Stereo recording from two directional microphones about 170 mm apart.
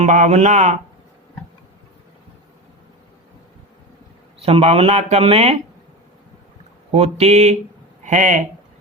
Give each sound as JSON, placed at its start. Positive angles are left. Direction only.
{"t": 0.0, "sound": "speech", "side_deg": -45}
{"t": 4.4, "sound": "speech", "side_deg": -35}
{"t": 6.9, "sound": "speech", "side_deg": -35}